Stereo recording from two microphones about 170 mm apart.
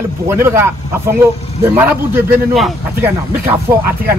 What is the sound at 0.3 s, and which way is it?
A man's voice, 15° right (ahead or behind).